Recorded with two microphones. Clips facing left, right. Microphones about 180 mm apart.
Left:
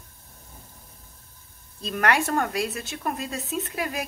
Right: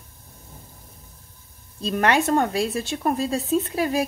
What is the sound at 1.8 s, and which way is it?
A woman's voice, 25° right (ahead or behind).